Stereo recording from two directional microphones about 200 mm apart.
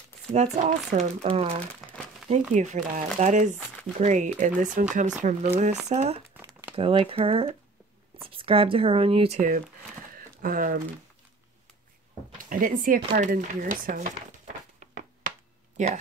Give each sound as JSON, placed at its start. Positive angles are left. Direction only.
{"t": 0.3, "sound": "speech", "side_deg": -35}
{"t": 6.3, "sound": "crumpling", "side_deg": -10}
{"t": 6.7, "sound": "speech", "side_deg": -25}
{"t": 10.1, "sound": "a sound", "side_deg": -45}
{"t": 12.4, "sound": "speech", "side_deg": -45}
{"t": 14.8, "sound": "a sound", "side_deg": -40}
{"t": 15.8, "sound": "speech", "side_deg": -40}